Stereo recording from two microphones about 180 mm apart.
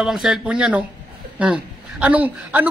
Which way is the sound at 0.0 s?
Centre (ahead or behind).